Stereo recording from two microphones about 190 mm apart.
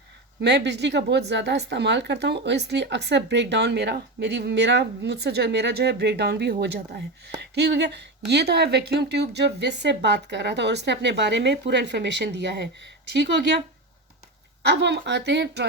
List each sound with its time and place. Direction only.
0.4 s speech: 65° right (ahead or behind)
14.6 s speech: 65° right (ahead or behind)